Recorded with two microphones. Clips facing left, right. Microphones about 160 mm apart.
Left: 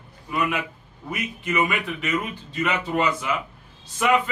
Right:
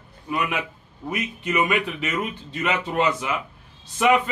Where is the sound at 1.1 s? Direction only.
20° right (ahead or behind).